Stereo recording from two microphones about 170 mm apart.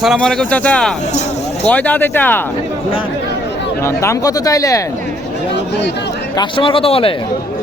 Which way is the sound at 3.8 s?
15° left (ahead or behind).